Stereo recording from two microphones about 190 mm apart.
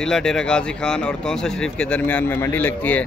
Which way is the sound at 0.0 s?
5° left (ahead or behind).